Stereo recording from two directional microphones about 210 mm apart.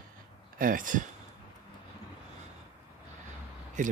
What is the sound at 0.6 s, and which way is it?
Speech, 40° right (ahead or behind).